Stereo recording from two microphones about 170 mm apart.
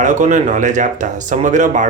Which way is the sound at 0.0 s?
45° right (ahead or behind).